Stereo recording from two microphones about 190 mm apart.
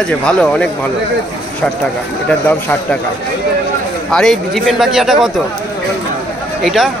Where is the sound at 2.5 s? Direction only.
10° left (ahead or behind).